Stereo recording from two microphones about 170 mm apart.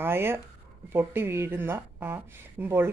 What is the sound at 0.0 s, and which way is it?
A woman's voice, 15° right (ahead or behind).